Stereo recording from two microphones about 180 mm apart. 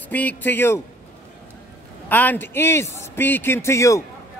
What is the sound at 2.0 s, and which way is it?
A man's voice, 10° left (ahead or behind).